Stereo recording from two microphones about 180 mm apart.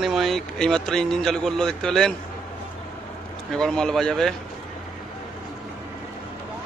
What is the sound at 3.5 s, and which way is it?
Speech, 5° left (ahead or behind).